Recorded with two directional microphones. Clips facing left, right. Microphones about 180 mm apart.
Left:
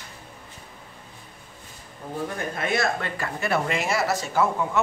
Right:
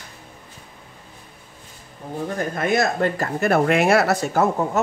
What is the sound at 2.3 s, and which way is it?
Speech, 45° right (ahead or behind).